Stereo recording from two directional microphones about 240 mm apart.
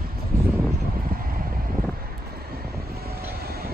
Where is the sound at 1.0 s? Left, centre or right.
Right.